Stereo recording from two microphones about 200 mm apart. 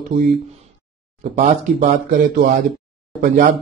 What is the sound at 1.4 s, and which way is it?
Speech, 35° right (ahead or behind).